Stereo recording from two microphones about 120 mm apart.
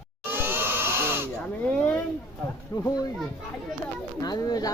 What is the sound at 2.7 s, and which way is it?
Speech, 30° left (ahead or behind).